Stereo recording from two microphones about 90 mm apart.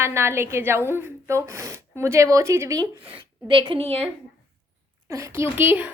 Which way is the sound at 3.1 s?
65° right (ahead or behind).